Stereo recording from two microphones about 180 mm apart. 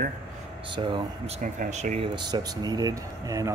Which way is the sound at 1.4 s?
40° right (ahead or behind).